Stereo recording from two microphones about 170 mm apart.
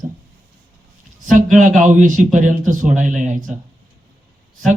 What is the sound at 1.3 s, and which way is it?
A man's voice, 50° right (ahead or behind).